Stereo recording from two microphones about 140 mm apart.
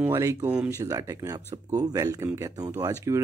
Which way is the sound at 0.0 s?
20° right (ahead or behind).